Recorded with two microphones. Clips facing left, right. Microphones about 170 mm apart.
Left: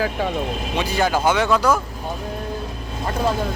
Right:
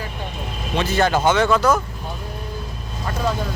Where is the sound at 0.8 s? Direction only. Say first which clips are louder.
Right 2 dB; 10° left (ahead or behind).